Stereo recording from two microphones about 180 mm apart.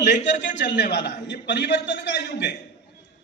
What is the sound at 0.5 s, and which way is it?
A man's voice, 75° left (ahead or behind).